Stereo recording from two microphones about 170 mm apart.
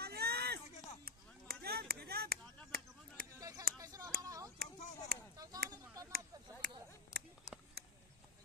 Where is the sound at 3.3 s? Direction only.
20° right (ahead or behind).